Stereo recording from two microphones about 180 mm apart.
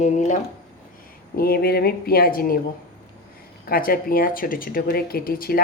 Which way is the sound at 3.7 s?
55° left (ahead or behind).